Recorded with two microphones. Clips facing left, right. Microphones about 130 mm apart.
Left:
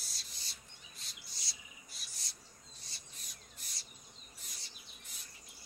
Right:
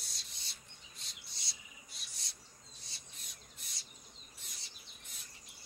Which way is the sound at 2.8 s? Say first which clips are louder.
Even; centre (ahead or behind).